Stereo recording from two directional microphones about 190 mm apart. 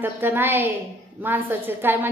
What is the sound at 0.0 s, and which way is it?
A woman's voice, 10° right (ahead or behind).